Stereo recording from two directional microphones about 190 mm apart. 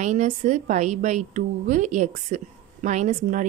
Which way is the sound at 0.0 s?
40° right (ahead or behind).